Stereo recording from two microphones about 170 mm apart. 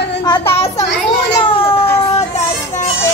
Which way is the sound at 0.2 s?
20° left (ahead or behind).